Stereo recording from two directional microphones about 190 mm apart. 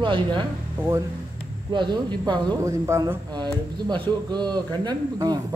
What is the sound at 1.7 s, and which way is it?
Speech, 25° right (ahead or behind).